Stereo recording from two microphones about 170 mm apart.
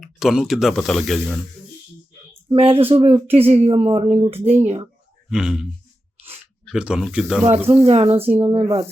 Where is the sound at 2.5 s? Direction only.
35° right (ahead or behind).